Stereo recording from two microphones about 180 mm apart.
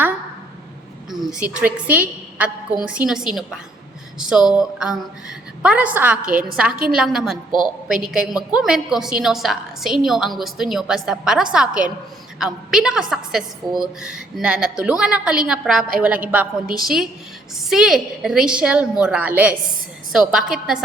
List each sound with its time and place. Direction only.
1.2 s a woman's voice: 5° right (ahead or behind)
6.2 s a woman's voice: 55° right (ahead or behind)
6.9 s a woman's voice: 5° right (ahead or behind)